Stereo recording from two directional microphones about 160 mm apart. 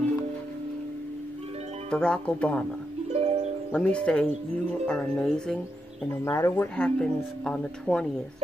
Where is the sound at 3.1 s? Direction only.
40° right (ahead or behind).